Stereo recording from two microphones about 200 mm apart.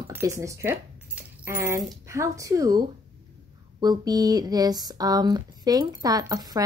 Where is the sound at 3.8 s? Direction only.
20° right (ahead or behind).